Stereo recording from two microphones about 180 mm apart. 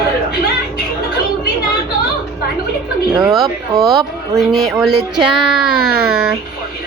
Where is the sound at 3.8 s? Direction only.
Centre (ahead or behind).